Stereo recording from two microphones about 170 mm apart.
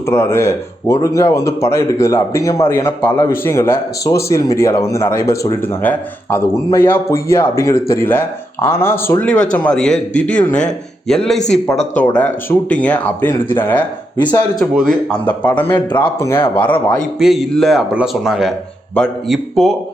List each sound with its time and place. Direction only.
0.1 s speech: 15° left (ahead or behind)
11.3 s speech: 40° left (ahead or behind)
11.9 s speech: 10° left (ahead or behind)
14.2 s speech: 25° left (ahead or behind)
14.8 s speech: 5° left (ahead or behind)
17.2 s speech: centre (ahead or behind)